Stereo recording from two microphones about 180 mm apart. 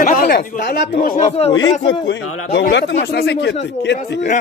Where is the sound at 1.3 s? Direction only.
35° left (ahead or behind).